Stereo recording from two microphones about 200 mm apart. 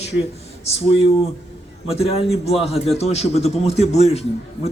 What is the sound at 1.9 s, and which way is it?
A man's voice, 30° left (ahead or behind).